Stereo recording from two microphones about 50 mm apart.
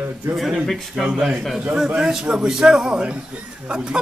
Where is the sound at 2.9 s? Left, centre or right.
Right.